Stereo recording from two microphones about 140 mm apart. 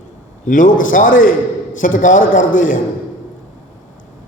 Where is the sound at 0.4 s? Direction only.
70° left (ahead or behind).